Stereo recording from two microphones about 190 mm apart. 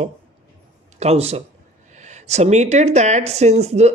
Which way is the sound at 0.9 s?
35° right (ahead or behind).